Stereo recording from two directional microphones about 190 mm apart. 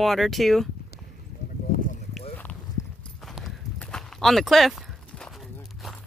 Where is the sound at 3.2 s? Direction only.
Centre (ahead or behind).